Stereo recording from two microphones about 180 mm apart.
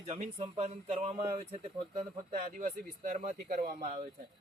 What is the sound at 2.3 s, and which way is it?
Speech, 45° right (ahead or behind).